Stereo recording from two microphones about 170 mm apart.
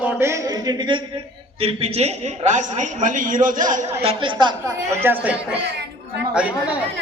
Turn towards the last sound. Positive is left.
turn(degrees=-5)  # may be behind; listen again after turning